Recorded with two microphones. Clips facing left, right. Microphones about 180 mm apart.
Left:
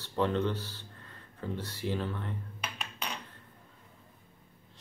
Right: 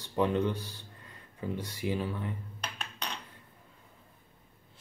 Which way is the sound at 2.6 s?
5° left (ahead or behind).